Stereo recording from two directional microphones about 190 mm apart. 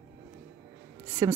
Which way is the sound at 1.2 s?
20° right (ahead or behind).